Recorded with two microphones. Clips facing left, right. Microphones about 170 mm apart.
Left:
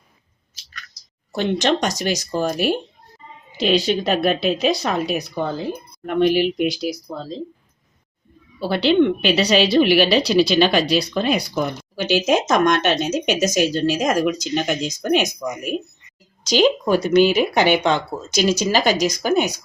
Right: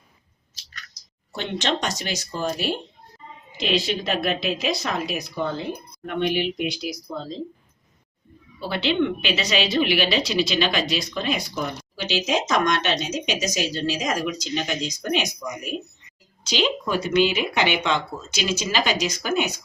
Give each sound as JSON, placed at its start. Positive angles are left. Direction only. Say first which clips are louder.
{"t": 1.3, "sound": "speech", "louder": "left 7 dB", "side_deg": 40}
{"t": 3.6, "sound": "speech", "louder": "left 6 dB", "side_deg": 35}
{"t": 8.6, "sound": "a woman's voice", "louder": "left 7 dB", "side_deg": 35}